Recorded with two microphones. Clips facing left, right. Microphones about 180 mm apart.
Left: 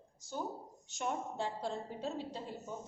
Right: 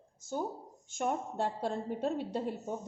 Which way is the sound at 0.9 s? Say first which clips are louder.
Right 4 dB; 50° right (ahead or behind).